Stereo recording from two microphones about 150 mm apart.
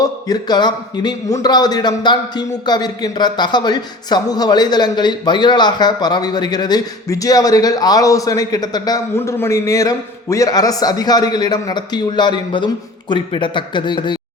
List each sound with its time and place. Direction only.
0.0 s a man's voice: 25° left (ahead or behind)